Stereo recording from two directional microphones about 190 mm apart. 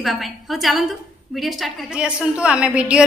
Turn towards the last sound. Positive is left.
turn(degrees=-5)  # may be behind; listen again after turning